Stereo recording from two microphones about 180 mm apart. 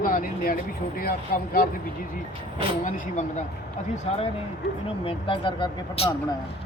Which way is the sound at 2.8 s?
45° left (ahead or behind).